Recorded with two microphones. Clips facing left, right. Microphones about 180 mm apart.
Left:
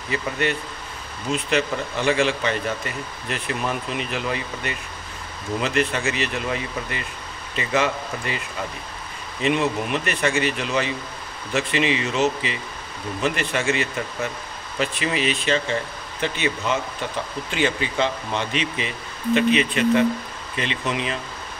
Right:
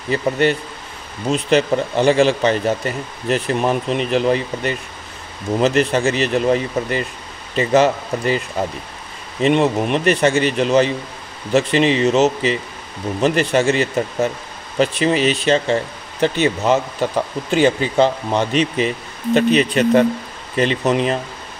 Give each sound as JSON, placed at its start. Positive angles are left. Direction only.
{"t": 0.1, "sound": "speech", "side_deg": -35}